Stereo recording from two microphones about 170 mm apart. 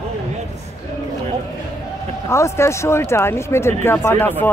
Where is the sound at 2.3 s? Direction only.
15° left (ahead or behind).